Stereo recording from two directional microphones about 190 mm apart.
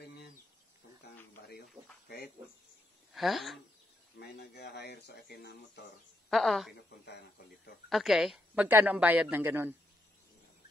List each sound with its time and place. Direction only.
2.0 s speech: 55° left (ahead or behind)
3.2 s speech: centre (ahead or behind)
4.2 s speech: 55° left (ahead or behind)
6.3 s speech: centre (ahead or behind)
6.9 s speech: 60° left (ahead or behind)
7.9 s a woman's voice: centre (ahead or behind)